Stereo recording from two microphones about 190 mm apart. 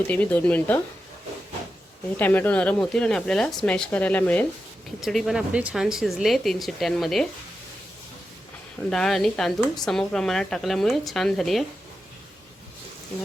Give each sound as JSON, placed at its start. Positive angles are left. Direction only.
{"t": 0.1, "sound": "speech", "side_deg": 10}
{"t": 2.1, "sound": "speech", "side_deg": 10}
{"t": 8.9, "sound": "speech", "side_deg": 0}